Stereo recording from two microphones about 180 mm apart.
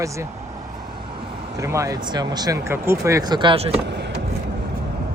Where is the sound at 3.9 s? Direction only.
70° right (ahead or behind).